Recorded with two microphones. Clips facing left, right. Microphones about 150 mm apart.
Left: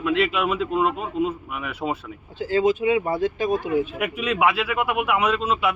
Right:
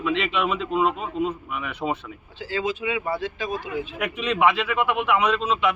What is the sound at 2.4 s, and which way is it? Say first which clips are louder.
Speech: left 7 dB; 45° left (ahead or behind).